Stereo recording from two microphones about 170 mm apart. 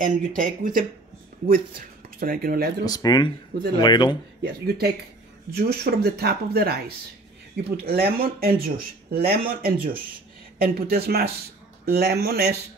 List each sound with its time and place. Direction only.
0.0 s speech: 55° right (ahead or behind)
2.8 s speech: 20° left (ahead or behind)
4.4 s speech: 65° right (ahead or behind)